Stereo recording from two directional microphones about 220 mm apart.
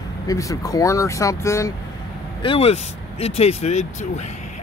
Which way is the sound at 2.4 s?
25° left (ahead or behind).